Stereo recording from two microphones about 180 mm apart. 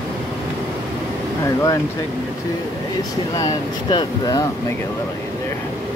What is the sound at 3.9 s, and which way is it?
Speech, 20° left (ahead or behind).